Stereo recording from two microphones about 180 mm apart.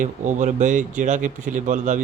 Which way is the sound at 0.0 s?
45° right (ahead or behind).